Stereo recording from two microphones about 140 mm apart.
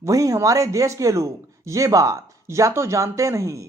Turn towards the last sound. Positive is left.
turn(degrees=-20)  # may be behind; listen again after turning